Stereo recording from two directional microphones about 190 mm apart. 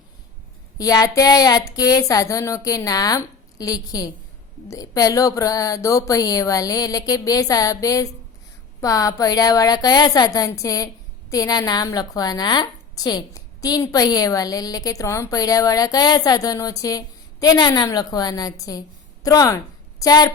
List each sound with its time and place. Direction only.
0.8 s a woman's voice: 20° left (ahead or behind)